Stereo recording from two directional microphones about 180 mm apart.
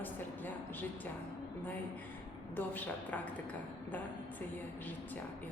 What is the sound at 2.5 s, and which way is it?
Speech, 10° left (ahead or behind).